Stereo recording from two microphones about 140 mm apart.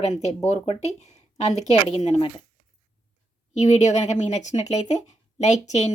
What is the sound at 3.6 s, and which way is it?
Speech, 60° left (ahead or behind).